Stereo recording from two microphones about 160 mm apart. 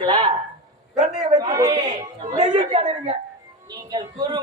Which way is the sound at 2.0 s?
45° right (ahead or behind).